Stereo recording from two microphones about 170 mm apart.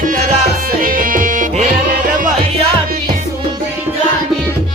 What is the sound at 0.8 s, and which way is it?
Tabla, 55° right (ahead or behind).